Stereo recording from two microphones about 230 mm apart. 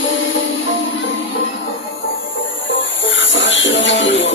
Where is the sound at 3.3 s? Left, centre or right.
Left.